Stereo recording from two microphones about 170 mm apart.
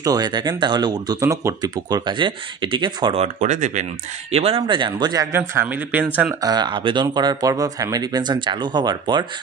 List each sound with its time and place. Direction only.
0.0 s speech: 20° right (ahead or behind)
3.3 s speech: 45° right (ahead or behind)
4.3 s speech: 35° right (ahead or behind); by 6.0 s 10° right (ahead or behind)
6.4 s speech: 25° right (ahead or behind)